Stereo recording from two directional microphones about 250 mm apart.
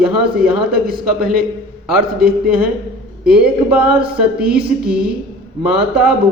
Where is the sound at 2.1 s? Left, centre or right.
Right.